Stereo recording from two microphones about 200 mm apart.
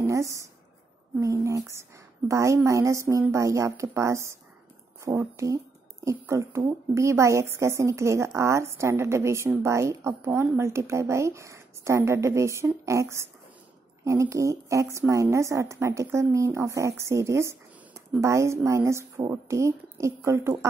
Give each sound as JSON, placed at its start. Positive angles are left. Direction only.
{"t": 0.0, "sound": "a woman's voice", "side_deg": -15}